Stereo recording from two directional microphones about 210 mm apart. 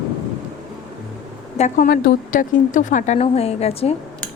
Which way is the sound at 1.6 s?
40° left (ahead or behind).